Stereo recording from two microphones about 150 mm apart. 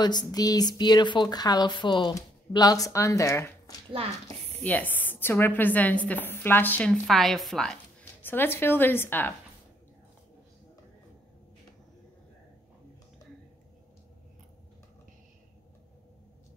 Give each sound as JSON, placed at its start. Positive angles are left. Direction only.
{"t": 0.0, "sound": "speech", "side_deg": 25}
{"t": 3.9, "sound": "a child's voice", "side_deg": -40}
{"t": 4.6, "sound": "a woman's voice", "side_deg": 10}